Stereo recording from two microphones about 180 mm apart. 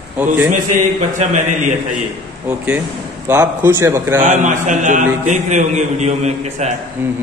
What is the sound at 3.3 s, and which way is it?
Speech, 15° right (ahead or behind).